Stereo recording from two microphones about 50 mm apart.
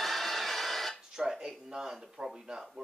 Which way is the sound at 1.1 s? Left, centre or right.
Centre.